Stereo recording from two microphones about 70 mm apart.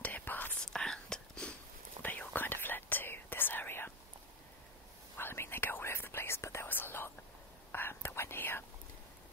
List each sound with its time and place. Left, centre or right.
0.0 s whispering: left
0.6 s whispering: centre
2.0 s whispering: left
5.1 s whispering: left